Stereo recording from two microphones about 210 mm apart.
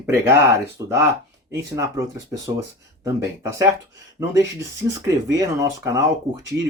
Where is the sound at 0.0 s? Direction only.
10° right (ahead or behind).